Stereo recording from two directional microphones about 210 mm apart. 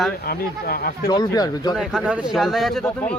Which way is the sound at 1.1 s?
20° left (ahead or behind).